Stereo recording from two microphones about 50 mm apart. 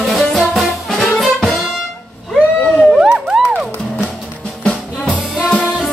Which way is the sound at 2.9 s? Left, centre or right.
Centre.